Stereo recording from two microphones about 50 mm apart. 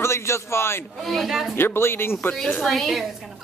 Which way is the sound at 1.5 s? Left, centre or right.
Left.